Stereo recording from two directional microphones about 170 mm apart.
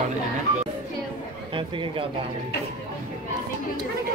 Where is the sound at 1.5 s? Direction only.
30° right (ahead or behind).